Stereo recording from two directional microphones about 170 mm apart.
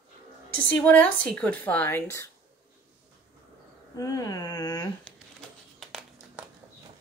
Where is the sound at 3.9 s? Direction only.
20° left (ahead or behind).